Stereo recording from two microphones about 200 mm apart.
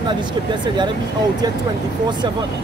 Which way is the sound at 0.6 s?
20° right (ahead or behind).